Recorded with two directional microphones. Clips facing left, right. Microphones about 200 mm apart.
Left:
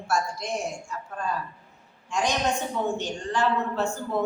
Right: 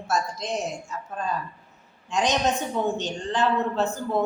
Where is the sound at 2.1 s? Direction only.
20° right (ahead or behind).